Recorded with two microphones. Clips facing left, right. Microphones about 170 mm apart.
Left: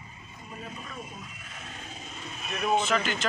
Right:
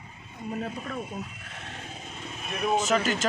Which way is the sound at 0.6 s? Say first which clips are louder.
Right 4 dB; 65° right (ahead or behind).